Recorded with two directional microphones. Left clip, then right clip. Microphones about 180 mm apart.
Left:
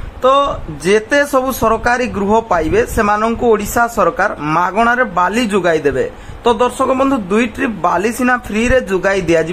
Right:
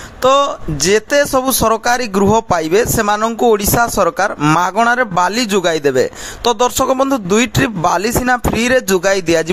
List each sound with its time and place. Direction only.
0.2 s a man's voice: 35° right (ahead or behind)